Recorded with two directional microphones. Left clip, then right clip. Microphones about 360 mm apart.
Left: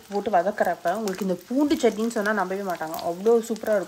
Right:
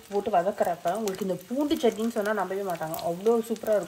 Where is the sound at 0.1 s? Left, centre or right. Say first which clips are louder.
Left 2 dB; left.